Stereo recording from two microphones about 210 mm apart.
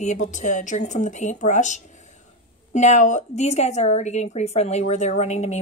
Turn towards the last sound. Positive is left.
turn(degrees=35)  # may be behind; listen again after turning